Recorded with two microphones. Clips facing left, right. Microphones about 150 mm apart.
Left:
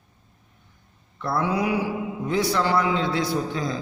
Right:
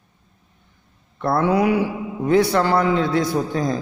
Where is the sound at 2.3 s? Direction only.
55° right (ahead or behind).